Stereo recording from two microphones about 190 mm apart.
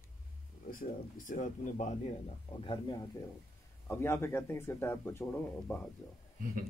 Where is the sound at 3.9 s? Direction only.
15° left (ahead or behind).